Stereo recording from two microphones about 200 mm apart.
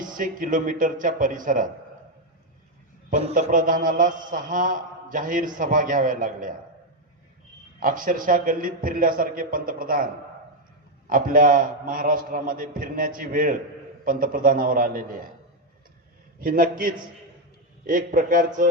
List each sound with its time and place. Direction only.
0.0 s a man's voice: 45° right (ahead or behind)
3.1 s a man's voice: 35° right (ahead or behind)
7.8 s a man's voice: 45° right (ahead or behind)
11.1 s a man's voice: 45° right (ahead or behind)
16.4 s a man's voice: 45° right (ahead or behind)